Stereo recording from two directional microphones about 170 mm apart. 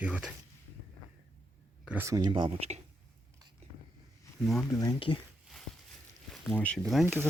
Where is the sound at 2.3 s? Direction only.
30° right (ahead or behind).